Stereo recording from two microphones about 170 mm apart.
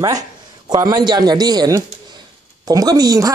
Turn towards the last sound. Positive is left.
turn(degrees=-20)  # may be behind; listen again after turning